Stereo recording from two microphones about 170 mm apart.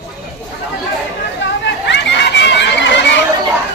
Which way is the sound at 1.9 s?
90° left.